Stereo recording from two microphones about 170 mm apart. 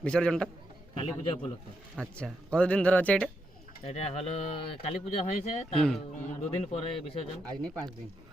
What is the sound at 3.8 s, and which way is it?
Speech, 35° left (ahead or behind).